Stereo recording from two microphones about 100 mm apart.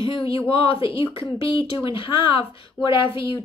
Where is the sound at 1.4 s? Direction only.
60° left (ahead or behind).